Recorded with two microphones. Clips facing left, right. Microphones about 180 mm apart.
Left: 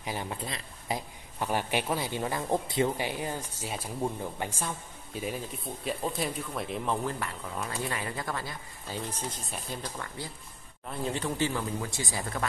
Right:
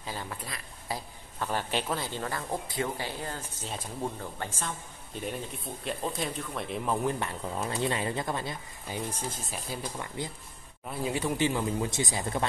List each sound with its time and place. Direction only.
0.0 s speech: 15° left (ahead or behind); by 7.0 s centre (ahead or behind)
7.1 s speech: 25° right (ahead or behind)
9.4 s speech: centre (ahead or behind)
9.9 s speech: 20° right (ahead or behind)